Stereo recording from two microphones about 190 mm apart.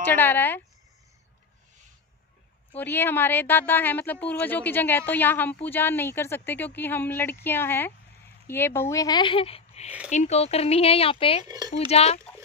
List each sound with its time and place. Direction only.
0.0 s speech: 10° left (ahead or behind)
2.7 s speech: 10° left (ahead or behind); by 11.4 s 30° left (ahead or behind)
11.4 s a child's voice: 20° right (ahead or behind)
11.9 s speech: 30° left (ahead or behind)